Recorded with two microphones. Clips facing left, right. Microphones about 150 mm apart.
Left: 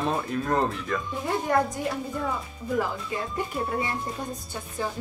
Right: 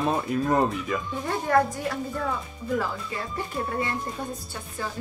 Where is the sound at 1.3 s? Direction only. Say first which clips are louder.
Right 2 dB; 20° left (ahead or behind).